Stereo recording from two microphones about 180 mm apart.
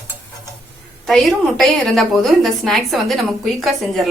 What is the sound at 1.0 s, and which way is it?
A woman's voice, centre (ahead or behind).